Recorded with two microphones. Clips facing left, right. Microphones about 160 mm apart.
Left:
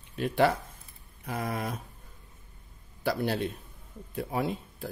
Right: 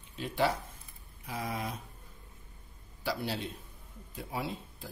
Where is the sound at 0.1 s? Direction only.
60° left (ahead or behind).